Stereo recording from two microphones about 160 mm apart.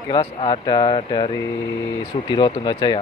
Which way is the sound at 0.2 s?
30° left (ahead or behind).